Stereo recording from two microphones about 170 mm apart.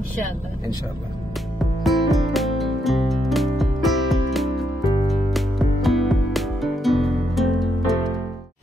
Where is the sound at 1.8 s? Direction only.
Centre (ahead or behind).